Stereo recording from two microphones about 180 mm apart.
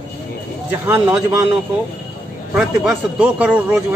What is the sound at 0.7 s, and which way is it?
Speech, 10° right (ahead or behind).